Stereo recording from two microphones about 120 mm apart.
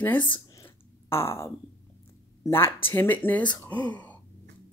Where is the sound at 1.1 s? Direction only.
20° left (ahead or behind).